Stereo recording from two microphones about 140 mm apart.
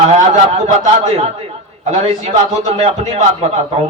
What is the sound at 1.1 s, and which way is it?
A man's voice, 45° right (ahead or behind).